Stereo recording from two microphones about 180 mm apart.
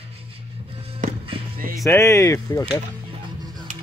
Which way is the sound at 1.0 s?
45° right (ahead or behind).